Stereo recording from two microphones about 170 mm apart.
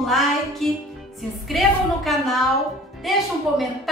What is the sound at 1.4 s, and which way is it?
A woman's voice, centre (ahead or behind).